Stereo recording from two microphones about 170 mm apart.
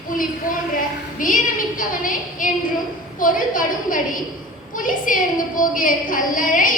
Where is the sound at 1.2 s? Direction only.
55° left (ahead or behind).